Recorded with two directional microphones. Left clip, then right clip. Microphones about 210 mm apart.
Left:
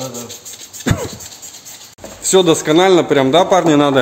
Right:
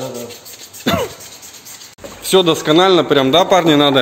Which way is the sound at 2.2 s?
Centre (ahead or behind).